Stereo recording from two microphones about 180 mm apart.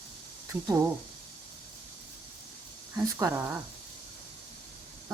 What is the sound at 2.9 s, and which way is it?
Speech, 15° right (ahead or behind).